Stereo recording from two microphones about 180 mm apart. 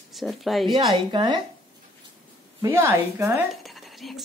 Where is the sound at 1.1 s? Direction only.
25° right (ahead or behind).